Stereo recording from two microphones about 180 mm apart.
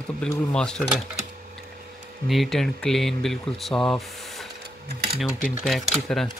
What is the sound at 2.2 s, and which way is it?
Speech, centre (ahead or behind).